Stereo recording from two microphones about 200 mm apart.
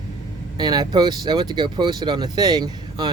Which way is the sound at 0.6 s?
20° right (ahead or behind).